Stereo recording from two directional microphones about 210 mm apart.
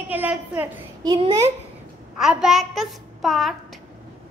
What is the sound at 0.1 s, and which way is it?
A woman's voice, 10° right (ahead or behind).